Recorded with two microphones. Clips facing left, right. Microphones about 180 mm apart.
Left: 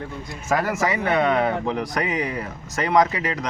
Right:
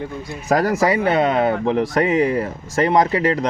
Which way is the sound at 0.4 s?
40° right (ahead or behind).